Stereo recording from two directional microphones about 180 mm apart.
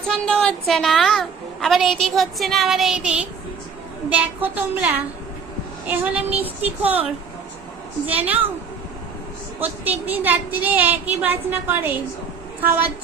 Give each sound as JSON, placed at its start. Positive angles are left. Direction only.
{"t": 0.1, "sound": "a woman's voice", "side_deg": 5}
{"t": 6.6, "sound": "speech", "side_deg": -35}
{"t": 8.0, "sound": "speech", "side_deg": -10}
{"t": 9.6, "sound": "speech", "side_deg": -10}